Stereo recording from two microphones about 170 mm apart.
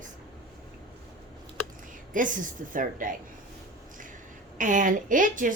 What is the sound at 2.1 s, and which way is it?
A woman's voice, 50° right (ahead or behind).